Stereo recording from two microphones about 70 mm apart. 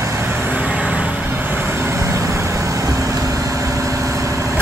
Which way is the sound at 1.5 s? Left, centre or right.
Right.